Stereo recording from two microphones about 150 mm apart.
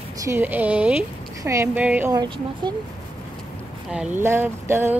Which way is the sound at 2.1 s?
25° right (ahead or behind).